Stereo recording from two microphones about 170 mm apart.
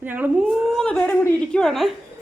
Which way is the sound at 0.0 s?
10° right (ahead or behind).